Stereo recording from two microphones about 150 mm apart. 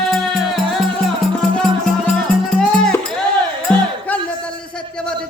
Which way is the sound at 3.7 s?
5° left (ahead or behind).